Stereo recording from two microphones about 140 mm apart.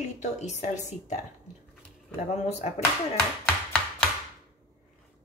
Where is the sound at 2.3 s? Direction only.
50° left (ahead or behind).